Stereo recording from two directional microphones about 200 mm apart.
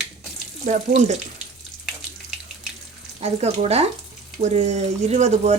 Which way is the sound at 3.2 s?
30° right (ahead or behind).